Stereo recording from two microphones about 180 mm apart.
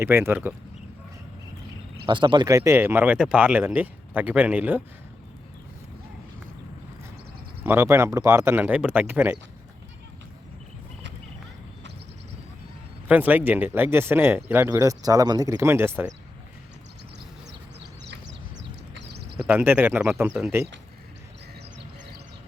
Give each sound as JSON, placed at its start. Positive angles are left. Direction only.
{"t": 0.0, "sound": "speech", "side_deg": -15}
{"t": 2.0, "sound": "speech", "side_deg": -25}
{"t": 7.6, "sound": "speech", "side_deg": -15}
{"t": 13.1, "sound": "speech", "side_deg": -10}
{"t": 17.7, "sound": "a sound", "side_deg": -70}
{"t": 19.5, "sound": "speech", "side_deg": -10}